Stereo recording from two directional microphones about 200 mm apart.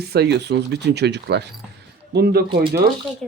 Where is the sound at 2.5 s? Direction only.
25° right (ahead or behind).